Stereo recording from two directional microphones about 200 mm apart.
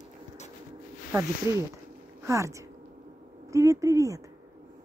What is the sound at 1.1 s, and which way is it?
Speech, 15° right (ahead or behind).